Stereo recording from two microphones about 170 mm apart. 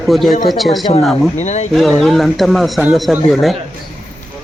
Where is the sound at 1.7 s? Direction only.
Centre (ahead or behind).